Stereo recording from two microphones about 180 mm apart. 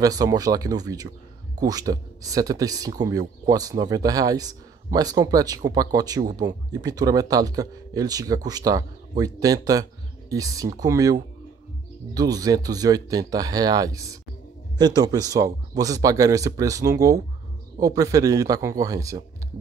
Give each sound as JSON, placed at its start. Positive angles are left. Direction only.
{"t": 0.0, "sound": "speech", "side_deg": -20}